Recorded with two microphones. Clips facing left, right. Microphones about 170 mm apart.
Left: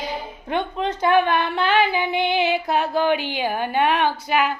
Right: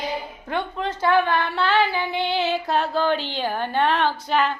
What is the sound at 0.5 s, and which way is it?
Speech, 20° left (ahead or behind).